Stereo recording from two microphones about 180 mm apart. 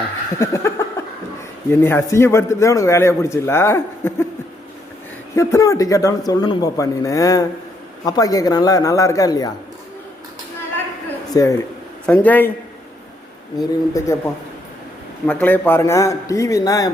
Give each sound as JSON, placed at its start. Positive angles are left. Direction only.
{"t": 0.3, "sound": "a sound", "side_deg": 15}
{"t": 1.7, "sound": "a man's voice", "side_deg": 15}
{"t": 5.3, "sound": "a man's voice", "side_deg": 15}
{"t": 11.3, "sound": "a man's voice", "side_deg": 15}
{"t": 13.6, "sound": "a man's voice", "side_deg": 20}
{"t": 15.3, "sound": "a man's voice", "side_deg": 10}